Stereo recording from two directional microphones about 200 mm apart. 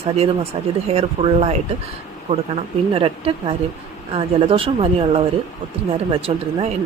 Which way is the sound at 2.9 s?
30° right (ahead or behind).